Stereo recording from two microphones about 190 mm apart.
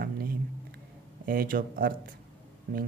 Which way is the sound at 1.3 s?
50° right (ahead or behind).